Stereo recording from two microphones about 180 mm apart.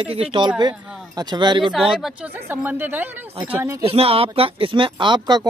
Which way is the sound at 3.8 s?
30° right (ahead or behind).